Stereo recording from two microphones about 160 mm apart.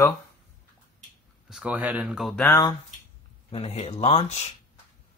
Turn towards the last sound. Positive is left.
turn(degrees=45)  # may be behind; listen again after turning